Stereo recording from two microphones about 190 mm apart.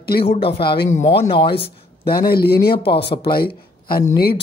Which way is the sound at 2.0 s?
55° left (ahead or behind).